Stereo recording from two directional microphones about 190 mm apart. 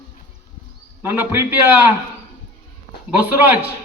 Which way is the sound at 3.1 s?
10° right (ahead or behind).